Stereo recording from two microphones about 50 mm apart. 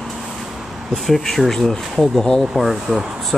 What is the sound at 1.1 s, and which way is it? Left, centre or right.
Speech, centre.